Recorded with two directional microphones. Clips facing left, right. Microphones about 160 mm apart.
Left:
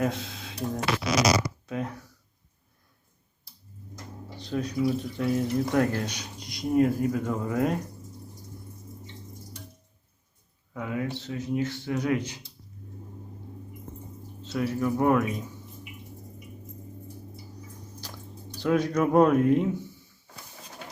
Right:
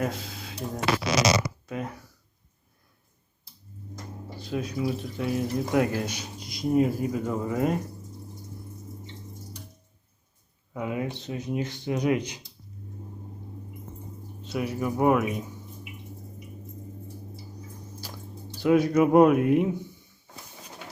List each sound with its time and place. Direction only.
0.0 s speech: centre (ahead or behind)
4.4 s speech: 5° right (ahead or behind)
10.8 s speech: 20° right (ahead or behind)
14.4 s speech: 15° right (ahead or behind)
18.6 s speech: 10° right (ahead or behind)